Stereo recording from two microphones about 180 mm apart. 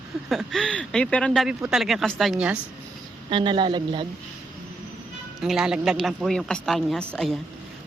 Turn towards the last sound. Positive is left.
turn(degrees=0)  # may be behind; listen again after turning